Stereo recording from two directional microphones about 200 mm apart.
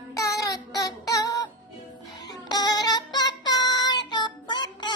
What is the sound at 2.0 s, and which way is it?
Music, 20° left (ahead or behind).